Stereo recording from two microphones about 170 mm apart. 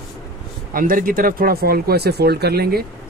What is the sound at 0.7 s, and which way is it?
Speech, 55° right (ahead or behind).